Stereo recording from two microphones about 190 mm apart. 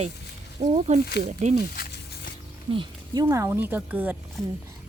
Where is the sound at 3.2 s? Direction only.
15° right (ahead or behind).